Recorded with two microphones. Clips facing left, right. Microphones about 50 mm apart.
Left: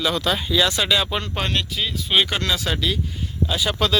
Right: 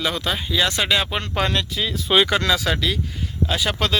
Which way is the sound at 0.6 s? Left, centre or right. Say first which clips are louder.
Even; right.